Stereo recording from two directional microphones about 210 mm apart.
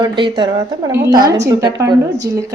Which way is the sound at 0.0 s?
20° right (ahead or behind).